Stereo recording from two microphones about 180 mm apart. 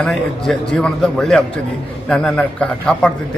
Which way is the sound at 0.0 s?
Centre (ahead or behind).